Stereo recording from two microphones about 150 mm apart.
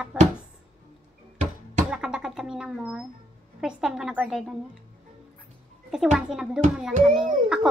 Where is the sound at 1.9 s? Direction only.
5° right (ahead or behind).